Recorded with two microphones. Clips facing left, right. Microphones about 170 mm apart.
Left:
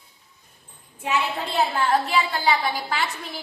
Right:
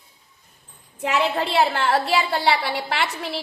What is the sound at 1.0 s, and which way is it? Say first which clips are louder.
A woman's voice: right 4 dB; 80° right.